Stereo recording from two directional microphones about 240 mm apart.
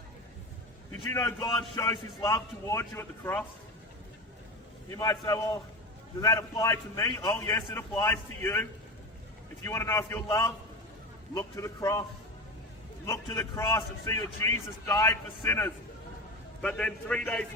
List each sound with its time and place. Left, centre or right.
1.1 s a man's voice: centre
4.9 s a man's voice: centre
9.6 s a man's voice: centre
13.1 s a man's voice: centre